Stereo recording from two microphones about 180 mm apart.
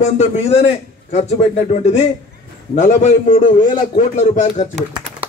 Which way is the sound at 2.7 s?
40° left (ahead or behind).